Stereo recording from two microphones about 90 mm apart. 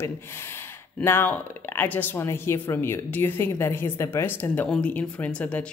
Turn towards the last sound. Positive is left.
turn(degrees=15)  # may be behind; listen again after turning